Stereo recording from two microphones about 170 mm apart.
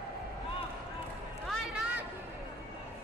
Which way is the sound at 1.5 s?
Centre (ahead or behind).